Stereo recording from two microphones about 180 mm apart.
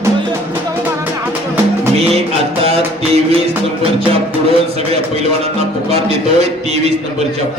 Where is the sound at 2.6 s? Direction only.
35° right (ahead or behind).